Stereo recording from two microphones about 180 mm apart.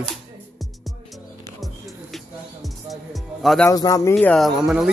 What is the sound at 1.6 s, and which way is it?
Music, centre (ahead or behind).